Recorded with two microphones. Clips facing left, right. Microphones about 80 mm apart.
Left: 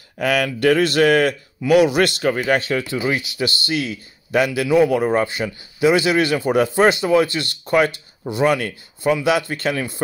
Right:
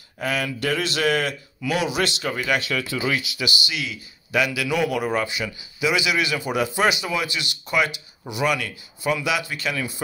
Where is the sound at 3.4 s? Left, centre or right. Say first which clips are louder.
Left 5 dB; left.